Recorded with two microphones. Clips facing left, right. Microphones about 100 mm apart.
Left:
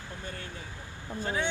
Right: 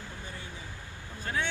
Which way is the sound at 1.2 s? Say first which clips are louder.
Left 2 dB; 20° left (ahead or behind).